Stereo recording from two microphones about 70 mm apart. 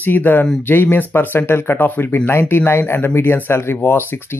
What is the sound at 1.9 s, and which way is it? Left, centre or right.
Speech, left.